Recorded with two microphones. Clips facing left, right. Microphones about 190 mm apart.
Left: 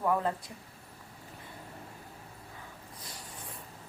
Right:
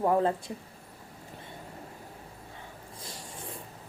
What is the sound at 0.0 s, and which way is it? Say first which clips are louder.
Speech: right 4 dB; 30° right (ahead or behind).